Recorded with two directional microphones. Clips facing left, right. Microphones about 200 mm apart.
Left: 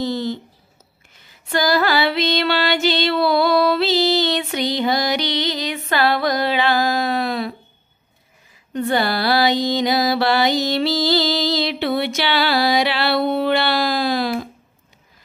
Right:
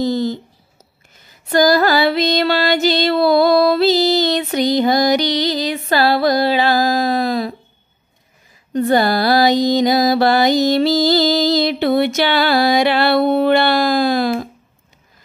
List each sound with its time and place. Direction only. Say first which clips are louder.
0.0 s mantra: right 4 dB; 40° right (ahead or behind)
1.1 s female singing: right 7 dB; 40° right (ahead or behind)
8.7 s mantra: right 5 dB; 40° right (ahead or behind)